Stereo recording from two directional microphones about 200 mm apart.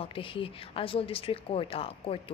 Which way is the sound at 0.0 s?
25° left (ahead or behind).